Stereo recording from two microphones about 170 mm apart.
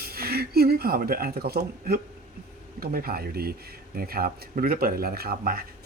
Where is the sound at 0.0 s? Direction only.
65° right (ahead or behind).